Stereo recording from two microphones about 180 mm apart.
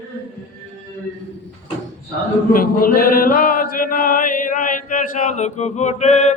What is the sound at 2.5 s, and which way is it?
Male singing, 55° left (ahead or behind).